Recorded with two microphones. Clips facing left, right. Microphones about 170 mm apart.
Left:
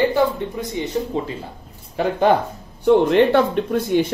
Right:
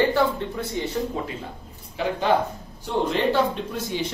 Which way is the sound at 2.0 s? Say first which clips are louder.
Left 5 dB; 50° left (ahead or behind).